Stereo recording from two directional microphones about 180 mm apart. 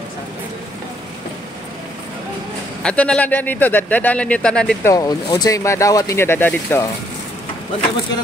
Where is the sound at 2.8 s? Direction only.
5° left (ahead or behind).